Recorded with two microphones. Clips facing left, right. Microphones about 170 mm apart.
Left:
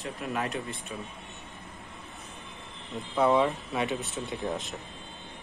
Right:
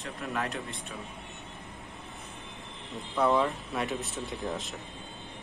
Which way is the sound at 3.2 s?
Centre (ahead or behind).